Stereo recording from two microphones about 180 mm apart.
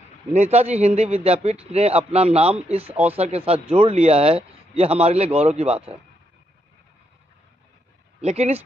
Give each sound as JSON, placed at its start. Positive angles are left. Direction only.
{"t": 0.3, "sound": "a man's voice", "side_deg": -35}
{"t": 2.9, "sound": "speech", "side_deg": -10}
{"t": 3.2, "sound": "a man's voice", "side_deg": -35}
{"t": 8.2, "sound": "a man's voice", "side_deg": -35}